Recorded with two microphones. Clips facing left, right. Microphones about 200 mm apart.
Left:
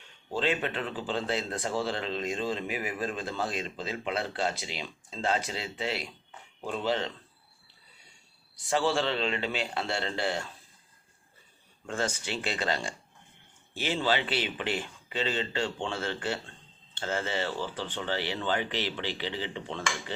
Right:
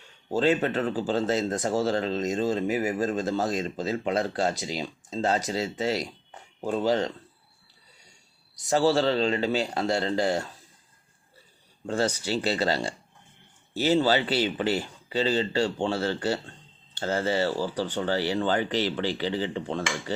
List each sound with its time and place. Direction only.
0.3 s speech: 45° right (ahead or behind)
8.6 s speech: 40° right (ahead or behind)
11.9 s speech: 35° right (ahead or behind)